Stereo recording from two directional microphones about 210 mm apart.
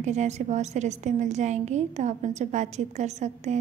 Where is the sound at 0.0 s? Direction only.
35° right (ahead or behind).